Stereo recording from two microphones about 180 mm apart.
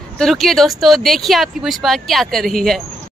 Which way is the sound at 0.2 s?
Centre (ahead or behind).